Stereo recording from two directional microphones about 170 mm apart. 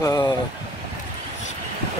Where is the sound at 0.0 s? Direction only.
20° left (ahead or behind).